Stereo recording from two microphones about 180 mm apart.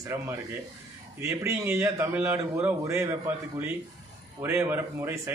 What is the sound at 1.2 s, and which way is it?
A man's voice, 15° right (ahead or behind).